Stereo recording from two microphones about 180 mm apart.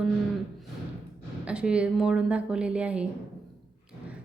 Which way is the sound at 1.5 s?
5° right (ahead or behind).